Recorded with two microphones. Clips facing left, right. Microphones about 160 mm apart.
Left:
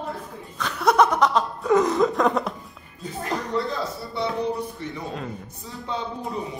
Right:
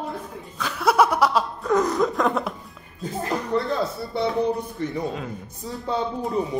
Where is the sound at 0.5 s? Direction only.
5° right (ahead or behind).